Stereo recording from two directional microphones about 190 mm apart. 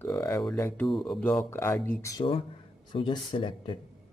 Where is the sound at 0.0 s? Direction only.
10° left (ahead or behind).